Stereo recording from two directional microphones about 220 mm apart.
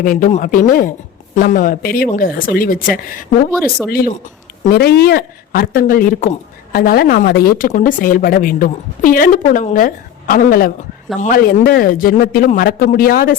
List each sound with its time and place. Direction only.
0.0 s speech: 35° left (ahead or behind)